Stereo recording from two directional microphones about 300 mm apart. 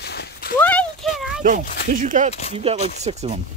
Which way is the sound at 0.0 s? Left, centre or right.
Left.